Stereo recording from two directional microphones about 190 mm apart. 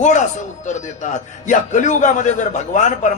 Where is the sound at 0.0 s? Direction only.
40° left (ahead or behind).